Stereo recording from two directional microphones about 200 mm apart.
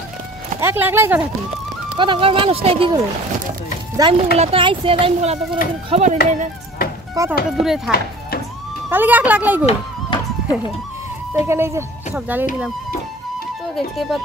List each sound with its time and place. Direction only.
0.6 s speech: 10° right (ahead or behind)
2.0 s speech: 25° right (ahead or behind)
7.2 s speech: 15° right (ahead or behind)
7.5 s speech: centre (ahead or behind)
8.9 s speech: 10° right (ahead or behind)
9.7 s music: 25° left (ahead or behind)
11.3 s speech: 15° right (ahead or behind)
13.7 s speech: centre (ahead or behind)